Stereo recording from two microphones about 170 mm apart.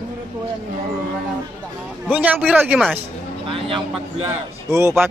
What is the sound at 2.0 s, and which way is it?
Speech, 10° right (ahead or behind).